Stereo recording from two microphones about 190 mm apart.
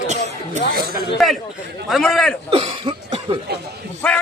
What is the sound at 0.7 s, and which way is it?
Speech, 50° right (ahead or behind).